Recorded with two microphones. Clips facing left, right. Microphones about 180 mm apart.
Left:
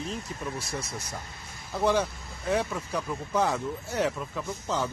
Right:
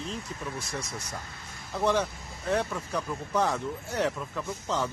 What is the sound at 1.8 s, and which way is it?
Speech, 5° left (ahead or behind).